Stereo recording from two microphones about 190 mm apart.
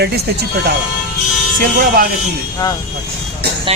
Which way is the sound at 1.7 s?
45° right (ahead or behind).